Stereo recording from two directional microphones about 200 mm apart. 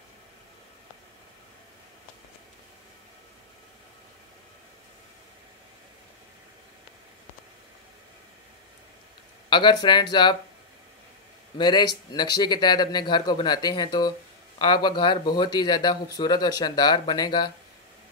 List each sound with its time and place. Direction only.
9.5 s speech: 25° left (ahead or behind)
11.5 s speech: 20° left (ahead or behind)